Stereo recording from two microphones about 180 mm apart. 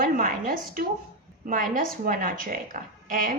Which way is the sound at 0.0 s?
50° right (ahead or behind).